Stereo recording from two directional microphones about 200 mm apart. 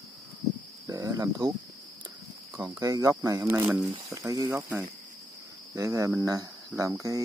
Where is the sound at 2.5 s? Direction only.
15° right (ahead or behind).